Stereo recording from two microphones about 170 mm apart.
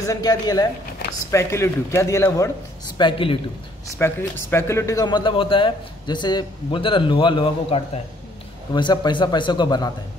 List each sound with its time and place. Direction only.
0.0 s speech: 20° left (ahead or behind)
3.0 s speech: 30° left (ahead or behind)
4.0 s speech: 15° left (ahead or behind)